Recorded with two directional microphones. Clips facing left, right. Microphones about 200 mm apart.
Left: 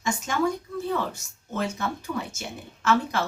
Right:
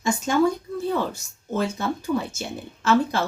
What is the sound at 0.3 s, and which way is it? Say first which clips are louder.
Speech: right 8 dB; 30° right (ahead or behind).